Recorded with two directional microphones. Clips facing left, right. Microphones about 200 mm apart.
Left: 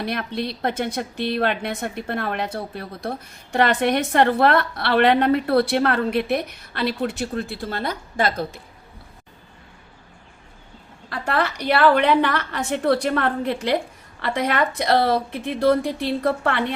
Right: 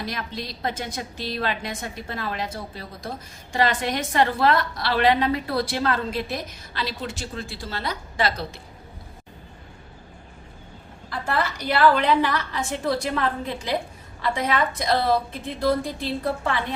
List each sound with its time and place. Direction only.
0.0 s a woman's voice: 60° left (ahead or behind)
11.1 s a woman's voice: 65° left (ahead or behind)